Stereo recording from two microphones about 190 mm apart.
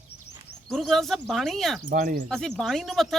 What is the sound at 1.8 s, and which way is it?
Speech, 50° right (ahead or behind).